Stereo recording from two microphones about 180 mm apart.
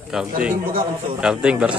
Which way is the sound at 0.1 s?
5° right (ahead or behind).